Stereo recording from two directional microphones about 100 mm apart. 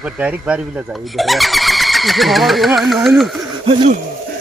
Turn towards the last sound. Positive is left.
turn(degrees=-60)  # may be behind; listen again after turning